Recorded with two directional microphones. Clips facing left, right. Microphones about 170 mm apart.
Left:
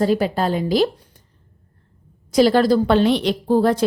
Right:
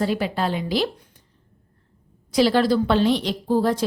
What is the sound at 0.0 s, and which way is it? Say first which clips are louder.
Speech: left 5 dB; 40° left (ahead or behind).